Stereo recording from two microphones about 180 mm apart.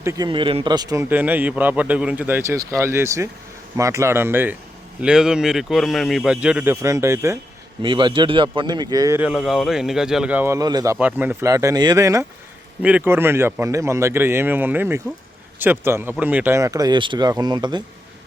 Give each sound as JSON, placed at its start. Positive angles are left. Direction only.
{"t": 0.0, "sound": "speech", "side_deg": -15}
{"t": 0.3, "sound": "speech", "side_deg": -30}
{"t": 1.1, "sound": "a man's voice", "side_deg": -10}
{"t": 7.8, "sound": "speech", "side_deg": -25}
{"t": 10.9, "sound": "speech", "side_deg": -10}